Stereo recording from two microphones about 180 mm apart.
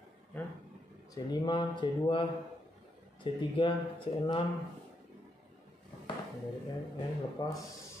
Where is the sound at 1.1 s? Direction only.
25° left (ahead or behind).